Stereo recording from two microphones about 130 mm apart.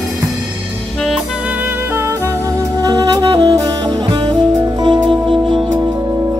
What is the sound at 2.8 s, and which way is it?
Saxophone, 30° right (ahead or behind).